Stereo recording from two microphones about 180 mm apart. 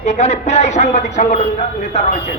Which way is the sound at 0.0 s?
40° left (ahead or behind).